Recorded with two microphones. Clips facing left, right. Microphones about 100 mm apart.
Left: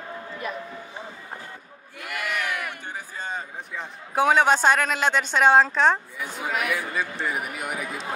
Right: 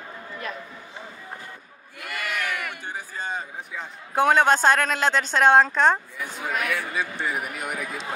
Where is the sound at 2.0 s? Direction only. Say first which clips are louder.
Left 1 dB; centre (ahead or behind).